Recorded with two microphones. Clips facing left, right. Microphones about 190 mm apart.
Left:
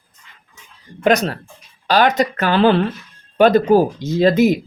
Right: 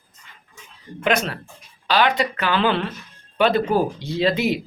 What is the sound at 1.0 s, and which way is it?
Speech, 40° left (ahead or behind).